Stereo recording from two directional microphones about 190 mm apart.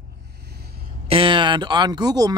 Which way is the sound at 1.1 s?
25° right (ahead or behind).